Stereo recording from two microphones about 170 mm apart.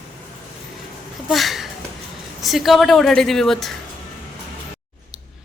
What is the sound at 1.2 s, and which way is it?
Speech, centre (ahead or behind).